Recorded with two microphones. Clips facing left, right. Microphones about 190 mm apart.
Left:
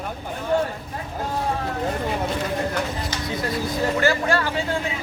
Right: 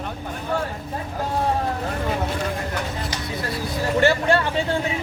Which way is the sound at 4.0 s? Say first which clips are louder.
Right 5 dB; 25° right (ahead or behind).